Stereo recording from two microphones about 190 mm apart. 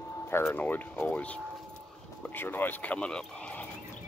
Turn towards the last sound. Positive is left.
turn(degrees=5)  # may be behind; listen again after turning